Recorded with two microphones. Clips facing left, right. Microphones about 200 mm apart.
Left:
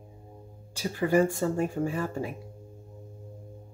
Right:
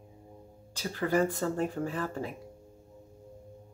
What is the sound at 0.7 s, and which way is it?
Speech, 15° left (ahead or behind).